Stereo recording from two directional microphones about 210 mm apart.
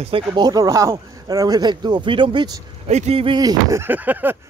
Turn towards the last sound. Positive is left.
turn(degrees=-10)  # may be behind; listen again after turning